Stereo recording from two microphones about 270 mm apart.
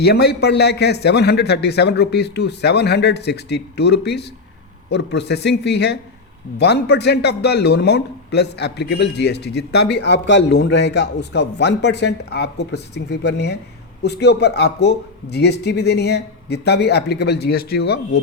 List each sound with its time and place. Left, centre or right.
0.0 s speech: left